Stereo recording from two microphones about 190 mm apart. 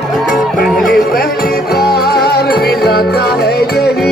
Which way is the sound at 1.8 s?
55° left (ahead or behind).